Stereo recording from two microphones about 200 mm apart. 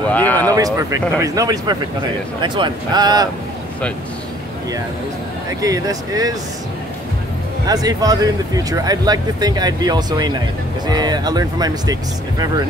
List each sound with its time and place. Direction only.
0.1 s speech: 10° left (ahead or behind)
0.5 s speech: 20° right (ahead or behind)
5.6 s speech: 15° right (ahead or behind)
7.6 s speech: 20° right (ahead or behind)